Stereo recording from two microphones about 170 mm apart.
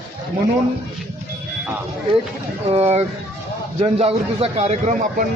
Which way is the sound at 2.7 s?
40° right (ahead or behind).